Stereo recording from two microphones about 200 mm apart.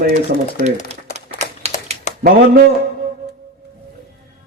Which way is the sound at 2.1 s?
35° left (ahead or behind).